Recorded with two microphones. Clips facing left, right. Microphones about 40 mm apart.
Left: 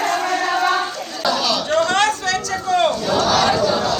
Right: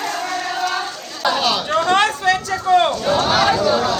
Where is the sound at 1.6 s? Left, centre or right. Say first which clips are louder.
Even; centre.